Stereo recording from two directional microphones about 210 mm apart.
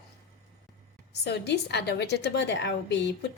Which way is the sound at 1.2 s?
50° left (ahead or behind).